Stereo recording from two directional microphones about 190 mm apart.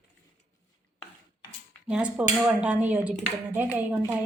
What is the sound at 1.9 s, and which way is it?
A woman's voice, 5° right (ahead or behind).